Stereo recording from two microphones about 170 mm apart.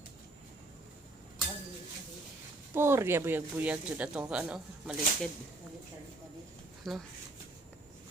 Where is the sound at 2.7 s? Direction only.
15° right (ahead or behind).